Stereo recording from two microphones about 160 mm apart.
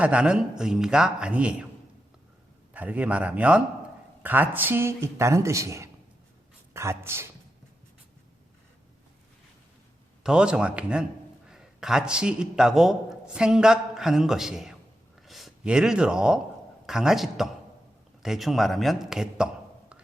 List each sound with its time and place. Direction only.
0.0 s a man's voice: 5° right (ahead or behind)
2.7 s speech: 10° right (ahead or behind)
10.2 s a man's voice: 5° right (ahead or behind)